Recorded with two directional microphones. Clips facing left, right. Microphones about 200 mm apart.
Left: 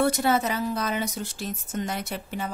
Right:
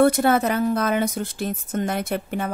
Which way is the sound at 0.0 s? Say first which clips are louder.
Right 6 dB; 55° right (ahead or behind).